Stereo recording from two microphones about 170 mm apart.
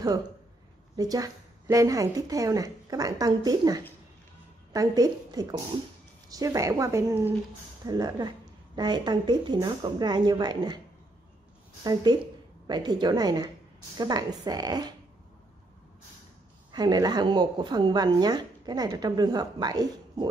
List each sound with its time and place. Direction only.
0.9 s speech: 20° right (ahead or behind)
11.8 s speech: 25° right (ahead or behind)
16.7 s speech: 25° right (ahead or behind)